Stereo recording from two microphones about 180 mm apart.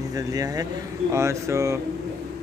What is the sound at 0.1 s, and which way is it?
Speech, 20° right (ahead or behind).